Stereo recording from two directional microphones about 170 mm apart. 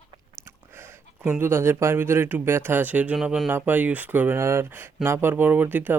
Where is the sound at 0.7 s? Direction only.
15° right (ahead or behind).